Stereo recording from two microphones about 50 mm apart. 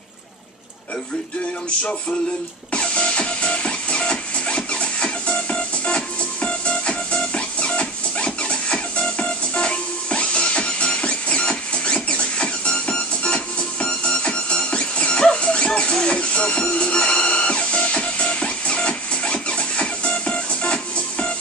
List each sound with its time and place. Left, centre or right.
2.7 s music: left